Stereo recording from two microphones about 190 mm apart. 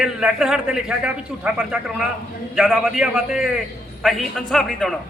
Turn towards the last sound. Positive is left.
turn(degrees=0)  # may be behind; listen again after turning